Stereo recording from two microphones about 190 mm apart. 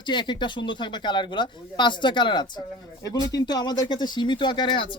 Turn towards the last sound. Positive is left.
turn(degrees=25)  # may be behind; listen again after turning